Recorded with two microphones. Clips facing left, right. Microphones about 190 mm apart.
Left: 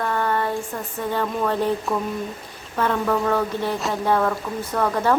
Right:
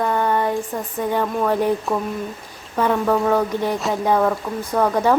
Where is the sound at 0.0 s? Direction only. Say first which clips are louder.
Right 3 dB; 15° right (ahead or behind).